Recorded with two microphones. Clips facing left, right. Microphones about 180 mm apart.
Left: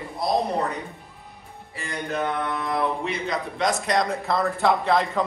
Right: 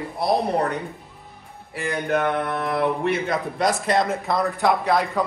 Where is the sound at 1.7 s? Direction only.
60° right (ahead or behind).